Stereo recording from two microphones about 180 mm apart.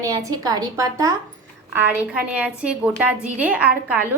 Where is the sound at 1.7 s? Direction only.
5° right (ahead or behind).